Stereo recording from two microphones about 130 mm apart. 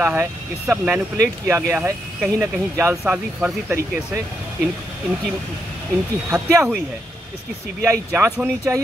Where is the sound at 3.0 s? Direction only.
10° right (ahead or behind).